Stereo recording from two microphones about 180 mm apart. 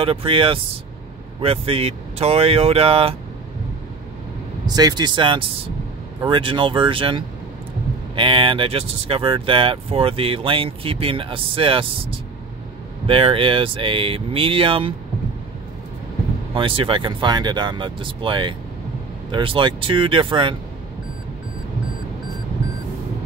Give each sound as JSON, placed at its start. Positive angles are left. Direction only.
{"t": 0.0, "sound": "speech", "side_deg": -30}
{"t": 4.6, "sound": "speech", "side_deg": -20}
{"t": 16.5, "sound": "speech", "side_deg": -30}